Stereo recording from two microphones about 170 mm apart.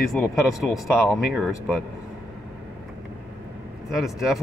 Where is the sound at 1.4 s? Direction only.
5° right (ahead or behind).